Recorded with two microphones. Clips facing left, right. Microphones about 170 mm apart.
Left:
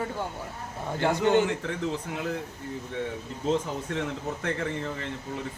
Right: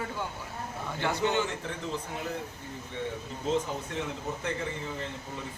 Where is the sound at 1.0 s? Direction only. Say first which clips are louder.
Left 6 dB; 50° left (ahead or behind).